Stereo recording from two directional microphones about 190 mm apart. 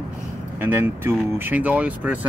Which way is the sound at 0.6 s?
10° right (ahead or behind).